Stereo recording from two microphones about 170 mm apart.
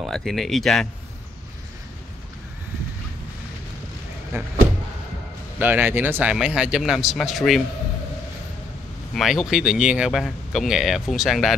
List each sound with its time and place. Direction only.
0.0 s speech: centre (ahead or behind)
4.3 s speech: 15° right (ahead or behind)
5.6 s speech: 10° right (ahead or behind)
9.1 s speech: centre (ahead or behind)